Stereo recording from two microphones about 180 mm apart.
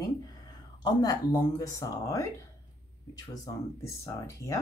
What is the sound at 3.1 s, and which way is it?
Speech, 20° left (ahead or behind).